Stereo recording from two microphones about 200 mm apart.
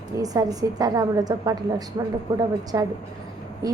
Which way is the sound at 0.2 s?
20° right (ahead or behind).